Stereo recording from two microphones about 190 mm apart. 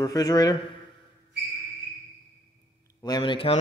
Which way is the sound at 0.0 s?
20° left (ahead or behind).